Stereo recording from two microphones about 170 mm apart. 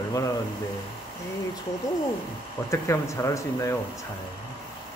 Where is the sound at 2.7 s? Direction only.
15° left (ahead or behind).